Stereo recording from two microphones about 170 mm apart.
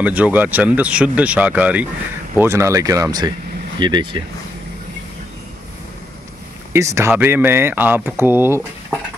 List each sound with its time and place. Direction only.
0.0 s speech: 10° right (ahead or behind); by 4.2 s 30° right (ahead or behind)
6.7 s speech: 15° right (ahead or behind)